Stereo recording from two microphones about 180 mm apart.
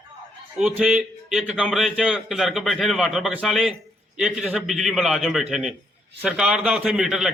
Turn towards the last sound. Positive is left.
turn(degrees=0)  # may be behind; listen again after turning